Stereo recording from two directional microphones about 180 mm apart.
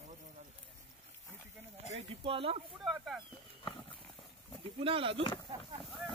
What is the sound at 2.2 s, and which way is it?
Speech, 30° right (ahead or behind).